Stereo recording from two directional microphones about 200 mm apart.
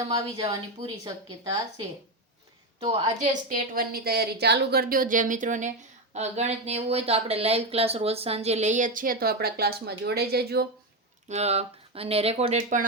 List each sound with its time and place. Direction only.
0.0 s a woman's voice: 20° right (ahead or behind)
3.5 s speech: 45° right (ahead or behind)
11.3 s speech: 35° right (ahead or behind)